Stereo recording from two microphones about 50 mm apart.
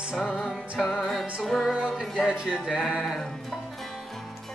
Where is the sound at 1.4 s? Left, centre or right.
Centre.